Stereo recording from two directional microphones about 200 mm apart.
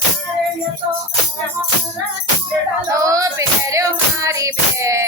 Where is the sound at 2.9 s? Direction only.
15° right (ahead or behind).